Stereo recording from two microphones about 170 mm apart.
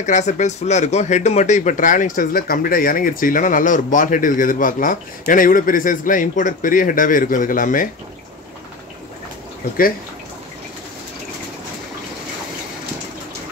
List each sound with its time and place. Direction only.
0.0 s speech: 45° left (ahead or behind)